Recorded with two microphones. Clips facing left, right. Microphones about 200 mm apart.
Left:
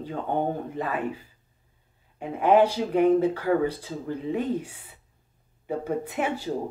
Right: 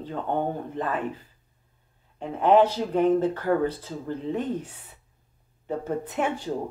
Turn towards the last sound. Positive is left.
turn(degrees=5)  # may be behind; listen again after turning